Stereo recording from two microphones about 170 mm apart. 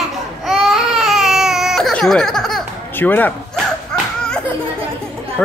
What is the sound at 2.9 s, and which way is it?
Speech, 10° left (ahead or behind).